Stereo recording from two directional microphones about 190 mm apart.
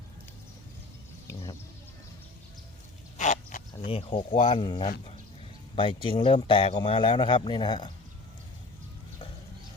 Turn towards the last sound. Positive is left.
turn(degrees=25)  # may be behind; listen again after turning